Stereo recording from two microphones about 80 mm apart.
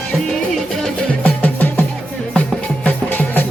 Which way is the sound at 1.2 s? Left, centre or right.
Left.